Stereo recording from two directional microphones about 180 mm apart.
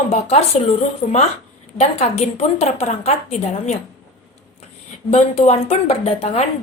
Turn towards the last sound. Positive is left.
turn(degrees=35)  # may be behind; listen again after turning